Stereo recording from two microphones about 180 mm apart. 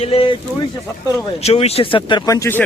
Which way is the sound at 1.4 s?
35° left (ahead or behind).